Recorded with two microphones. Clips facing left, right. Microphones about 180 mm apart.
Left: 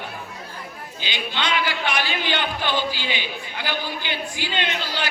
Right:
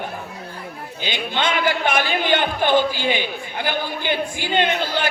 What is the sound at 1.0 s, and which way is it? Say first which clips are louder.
A man's voice: right 4 dB; 50° right (ahead or behind).